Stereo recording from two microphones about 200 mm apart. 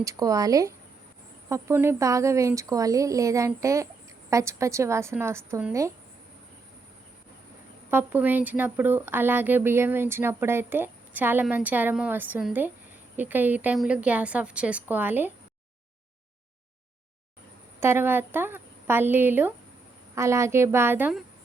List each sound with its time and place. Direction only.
0.0 s speech: 15° right (ahead or behind)
7.9 s speech: 10° right (ahead or behind)
17.7 s speech: 10° right (ahead or behind)